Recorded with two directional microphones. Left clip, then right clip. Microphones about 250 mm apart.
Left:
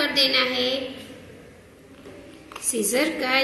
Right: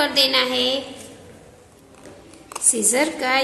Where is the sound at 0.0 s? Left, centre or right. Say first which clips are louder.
Right 2 dB; centre.